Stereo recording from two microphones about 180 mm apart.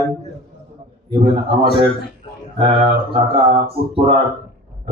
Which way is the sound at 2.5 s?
30° right (ahead or behind).